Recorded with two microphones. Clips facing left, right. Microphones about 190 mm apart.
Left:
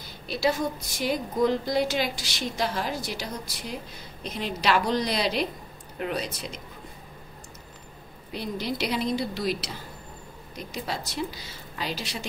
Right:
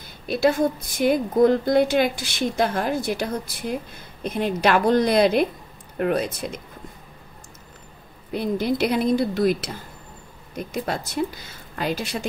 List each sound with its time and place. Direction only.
0.3 s a woman's voice: 55° right (ahead or behind)
8.3 s a woman's voice: 50° right (ahead or behind)